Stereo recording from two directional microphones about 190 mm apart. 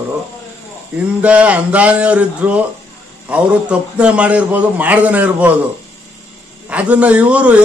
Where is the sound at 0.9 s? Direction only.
5° right (ahead or behind).